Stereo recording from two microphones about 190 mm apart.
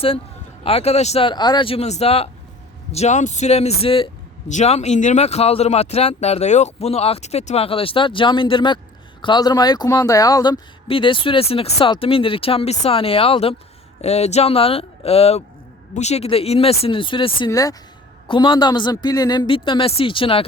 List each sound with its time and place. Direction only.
0.6 s a man's voice: 30° left (ahead or behind)